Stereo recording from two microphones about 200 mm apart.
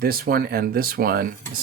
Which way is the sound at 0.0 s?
50° right (ahead or behind).